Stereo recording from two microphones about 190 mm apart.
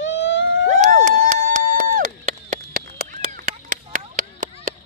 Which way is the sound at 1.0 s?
45° right (ahead or behind).